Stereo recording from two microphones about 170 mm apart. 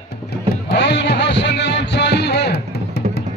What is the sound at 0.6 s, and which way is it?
Music, 90° left.